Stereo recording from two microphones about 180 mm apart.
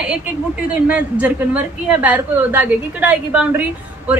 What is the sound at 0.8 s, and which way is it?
A woman's voice, 10° right (ahead or behind).